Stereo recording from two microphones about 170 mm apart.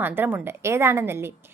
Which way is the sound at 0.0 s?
10° right (ahead or behind).